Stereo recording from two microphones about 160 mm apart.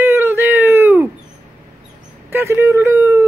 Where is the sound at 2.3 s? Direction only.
15° right (ahead or behind).